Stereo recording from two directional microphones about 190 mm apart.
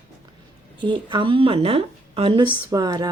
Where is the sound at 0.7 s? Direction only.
25° right (ahead or behind).